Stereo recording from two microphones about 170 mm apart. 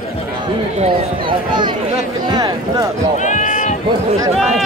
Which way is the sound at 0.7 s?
30° right (ahead or behind).